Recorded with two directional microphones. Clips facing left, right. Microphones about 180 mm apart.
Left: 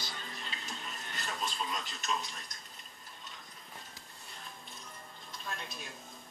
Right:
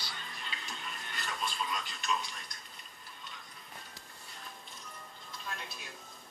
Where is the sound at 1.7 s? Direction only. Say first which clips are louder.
Right 1 dB; 45° left (ahead or behind).